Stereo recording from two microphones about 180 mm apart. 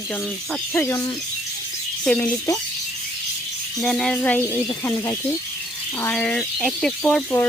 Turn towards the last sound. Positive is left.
turn(degrees=5)  # may be behind; listen again after turning